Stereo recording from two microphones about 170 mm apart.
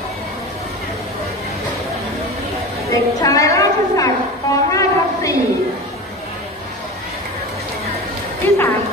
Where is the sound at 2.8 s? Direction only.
20° left (ahead or behind).